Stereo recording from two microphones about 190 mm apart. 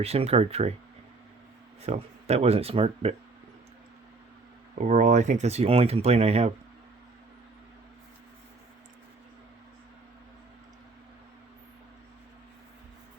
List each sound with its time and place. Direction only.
0.0 s speech: 30° right (ahead or behind)
1.8 s speech: 35° right (ahead or behind)
4.7 s speech: 40° right (ahead or behind)